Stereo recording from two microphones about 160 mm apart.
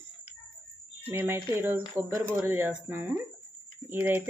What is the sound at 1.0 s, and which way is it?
Speech, 15° right (ahead or behind).